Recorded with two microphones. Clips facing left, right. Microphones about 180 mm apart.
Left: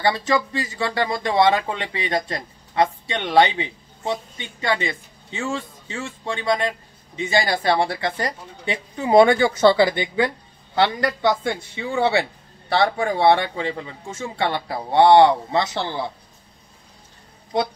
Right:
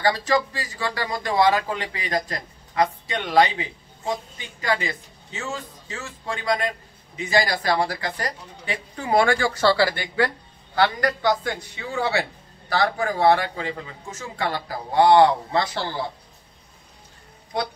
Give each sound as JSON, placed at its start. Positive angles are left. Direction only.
{"t": 0.0, "sound": "speech", "side_deg": 25}